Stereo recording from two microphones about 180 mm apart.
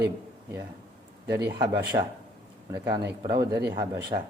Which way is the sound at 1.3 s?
65° right (ahead or behind).